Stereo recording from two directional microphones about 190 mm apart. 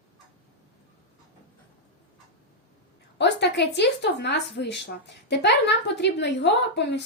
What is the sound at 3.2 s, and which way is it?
A woman's voice, 65° left (ahead or behind).